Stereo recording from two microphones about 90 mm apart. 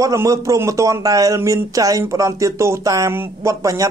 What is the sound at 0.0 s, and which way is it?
Speech, 40° right (ahead or behind).